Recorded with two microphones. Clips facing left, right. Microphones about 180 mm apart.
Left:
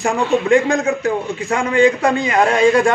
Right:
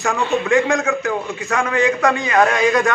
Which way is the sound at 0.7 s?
35° left (ahead or behind).